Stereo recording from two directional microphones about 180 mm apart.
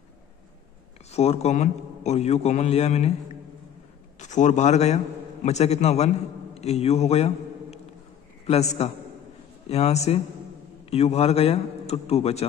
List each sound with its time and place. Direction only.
1.1 s a man's voice: 35° left (ahead or behind)
4.2 s a man's voice: 40° left (ahead or behind)